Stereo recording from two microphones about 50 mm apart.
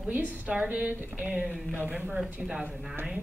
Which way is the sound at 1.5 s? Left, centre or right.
Left.